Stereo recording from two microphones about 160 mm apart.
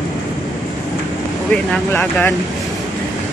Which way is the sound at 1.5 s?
10° left (ahead or behind).